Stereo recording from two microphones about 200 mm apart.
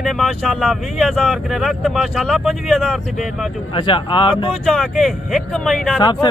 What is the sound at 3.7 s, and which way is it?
Speech, 25° left (ahead or behind).